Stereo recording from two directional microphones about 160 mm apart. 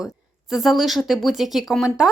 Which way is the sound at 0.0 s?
5° right (ahead or behind).